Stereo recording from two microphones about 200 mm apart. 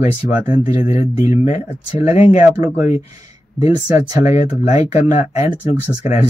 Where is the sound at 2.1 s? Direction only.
35° left (ahead or behind).